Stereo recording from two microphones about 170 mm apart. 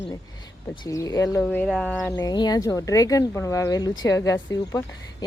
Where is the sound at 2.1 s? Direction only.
25° left (ahead or behind).